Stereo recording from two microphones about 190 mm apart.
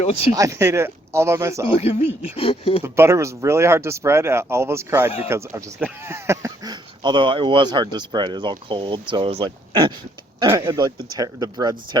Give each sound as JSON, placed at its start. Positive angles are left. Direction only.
{"t": 0.3, "sound": "speech", "side_deg": -15}
{"t": 1.7, "sound": "a sound", "side_deg": 35}
{"t": 2.8, "sound": "speech", "side_deg": -15}